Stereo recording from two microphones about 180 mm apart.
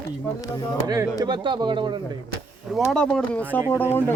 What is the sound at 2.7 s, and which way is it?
Speech, 5° left (ahead or behind).